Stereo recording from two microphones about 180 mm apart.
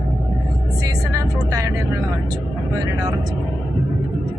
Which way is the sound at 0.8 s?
20° right (ahead or behind).